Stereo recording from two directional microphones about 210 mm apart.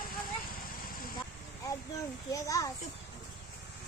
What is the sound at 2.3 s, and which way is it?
Speech, 15° left (ahead or behind).